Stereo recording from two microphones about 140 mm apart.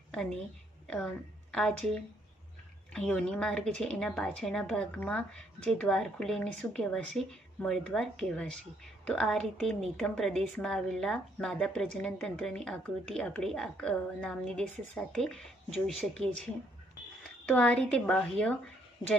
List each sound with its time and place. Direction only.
0.1 s a woman's voice: 5° left (ahead or behind)
17.5 s a woman's voice: 10° left (ahead or behind)